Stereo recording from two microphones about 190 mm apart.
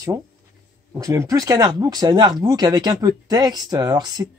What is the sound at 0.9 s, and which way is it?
Speech, 15° right (ahead or behind).